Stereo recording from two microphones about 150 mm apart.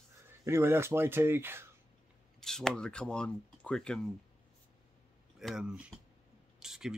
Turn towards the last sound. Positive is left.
turn(degrees=-5)  # may be behind; listen again after turning